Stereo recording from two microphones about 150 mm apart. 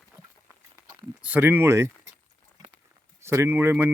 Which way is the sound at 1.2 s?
10° right (ahead or behind).